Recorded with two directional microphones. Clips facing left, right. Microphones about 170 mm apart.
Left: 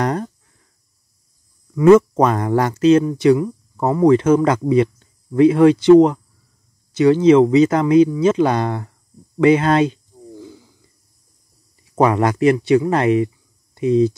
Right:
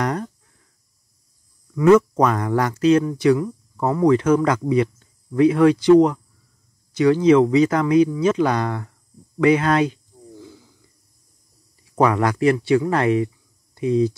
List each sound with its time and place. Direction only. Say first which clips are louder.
0.0 s a sound: left 3 dB; 30° left (ahead or behind)
1.8 s speech: left 3 dB; 25° left (ahead or behind)
11.9 s speech: left 2 dB; 25° left (ahead or behind)